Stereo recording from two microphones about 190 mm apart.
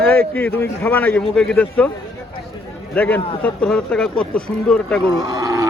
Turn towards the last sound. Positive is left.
turn(degrees=-15)  # may be behind; listen again after turning